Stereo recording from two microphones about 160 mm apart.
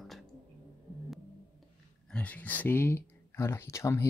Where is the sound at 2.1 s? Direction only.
10° left (ahead or behind).